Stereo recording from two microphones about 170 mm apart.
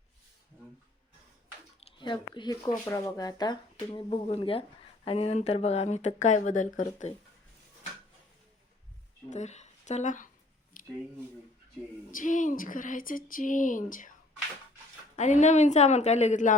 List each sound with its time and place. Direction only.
1.8 s speech: 30° left (ahead or behind); by 7.1 s 45° left (ahead or behind)
9.3 s speech: 40° left (ahead or behind)
10.8 s a sound: 55° left (ahead or behind)
12.1 s speech: 50° left (ahead or behind)
15.1 s speech: 45° left (ahead or behind)